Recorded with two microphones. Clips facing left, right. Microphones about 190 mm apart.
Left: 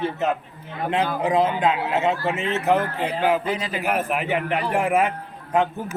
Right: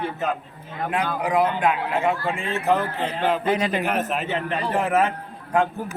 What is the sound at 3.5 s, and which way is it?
Speech, 60° right (ahead or behind).